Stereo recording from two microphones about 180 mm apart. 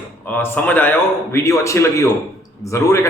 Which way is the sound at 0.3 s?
10° left (ahead or behind).